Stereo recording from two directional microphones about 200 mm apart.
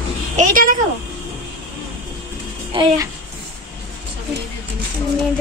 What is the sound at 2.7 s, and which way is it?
Speech, 25° right (ahead or behind).